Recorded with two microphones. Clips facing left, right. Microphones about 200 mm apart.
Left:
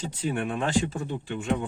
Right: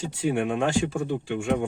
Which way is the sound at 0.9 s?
50° right (ahead or behind).